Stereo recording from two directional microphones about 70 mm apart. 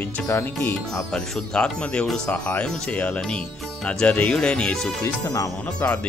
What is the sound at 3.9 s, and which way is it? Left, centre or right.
Music, centre.